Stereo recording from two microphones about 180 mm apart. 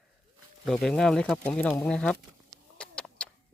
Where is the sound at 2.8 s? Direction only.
5° left (ahead or behind).